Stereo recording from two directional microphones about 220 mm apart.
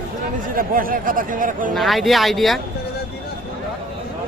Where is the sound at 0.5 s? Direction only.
40° right (ahead or behind).